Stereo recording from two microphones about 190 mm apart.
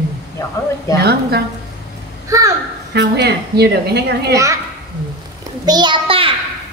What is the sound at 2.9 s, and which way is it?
A woman's voice, 60° right (ahead or behind).